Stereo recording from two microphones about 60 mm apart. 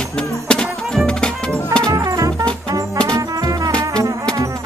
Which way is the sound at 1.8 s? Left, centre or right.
Right.